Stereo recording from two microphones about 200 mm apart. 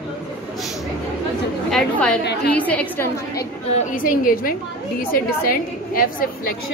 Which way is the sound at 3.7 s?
40° left (ahead or behind).